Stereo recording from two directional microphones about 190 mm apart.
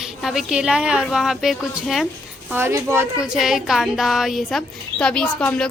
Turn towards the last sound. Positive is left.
turn(degrees=5)  # may be behind; listen again after turning